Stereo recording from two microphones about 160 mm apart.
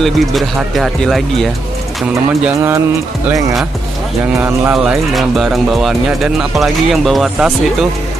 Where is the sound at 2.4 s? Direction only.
15° right (ahead or behind).